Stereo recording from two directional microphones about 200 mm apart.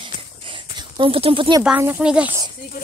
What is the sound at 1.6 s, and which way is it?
Speech, 10° right (ahead or behind).